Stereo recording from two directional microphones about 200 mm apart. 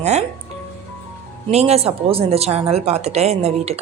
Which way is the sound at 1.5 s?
30° right (ahead or behind).